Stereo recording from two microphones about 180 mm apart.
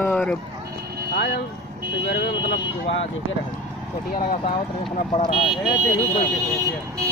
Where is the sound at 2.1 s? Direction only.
85° left.